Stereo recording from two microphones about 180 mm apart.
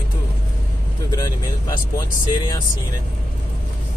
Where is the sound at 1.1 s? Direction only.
20° left (ahead or behind).